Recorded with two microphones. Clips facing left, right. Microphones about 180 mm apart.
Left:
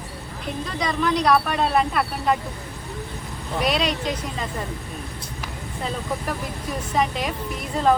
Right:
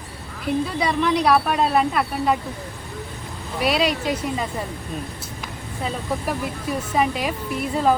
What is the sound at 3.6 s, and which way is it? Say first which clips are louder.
Speech: right 2 dB; 5° right (ahead or behind).